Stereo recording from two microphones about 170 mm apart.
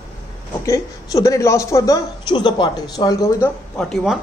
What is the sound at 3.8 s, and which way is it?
Speech, centre (ahead or behind).